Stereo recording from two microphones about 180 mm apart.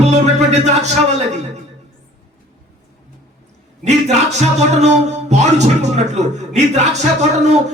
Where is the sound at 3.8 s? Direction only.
40° right (ahead or behind).